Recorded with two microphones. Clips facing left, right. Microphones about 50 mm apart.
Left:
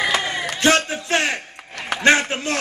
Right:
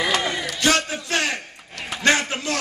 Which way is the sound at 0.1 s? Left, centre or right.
Left.